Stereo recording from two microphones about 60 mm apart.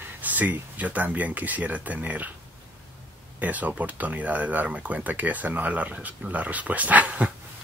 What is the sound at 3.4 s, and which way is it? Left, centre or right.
Speech, right.